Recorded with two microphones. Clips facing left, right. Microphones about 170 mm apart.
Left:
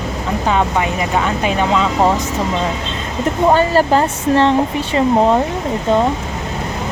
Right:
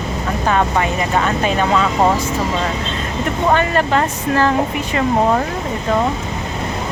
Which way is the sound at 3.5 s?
30° left (ahead or behind).